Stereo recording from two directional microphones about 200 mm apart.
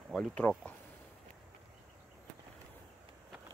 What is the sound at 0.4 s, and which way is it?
Speech, 5° left (ahead or behind).